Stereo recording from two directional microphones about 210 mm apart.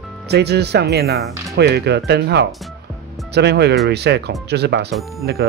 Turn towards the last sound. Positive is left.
turn(degrees=0)  # may be behind; listen again after turning